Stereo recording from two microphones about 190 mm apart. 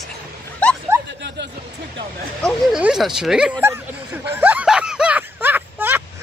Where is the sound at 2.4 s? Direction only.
5° right (ahead or behind).